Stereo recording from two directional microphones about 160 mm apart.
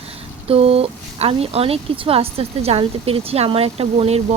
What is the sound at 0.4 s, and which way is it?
Speech, 40° right (ahead or behind).